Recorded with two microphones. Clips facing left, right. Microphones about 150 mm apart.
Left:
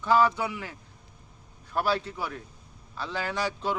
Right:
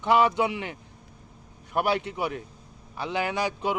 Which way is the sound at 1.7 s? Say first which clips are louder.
Right 2 dB; 20° right (ahead or behind).